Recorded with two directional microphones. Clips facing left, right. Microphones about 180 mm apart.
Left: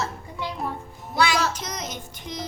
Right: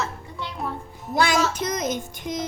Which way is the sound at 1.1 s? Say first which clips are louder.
Right 2 dB; 50° right (ahead or behind).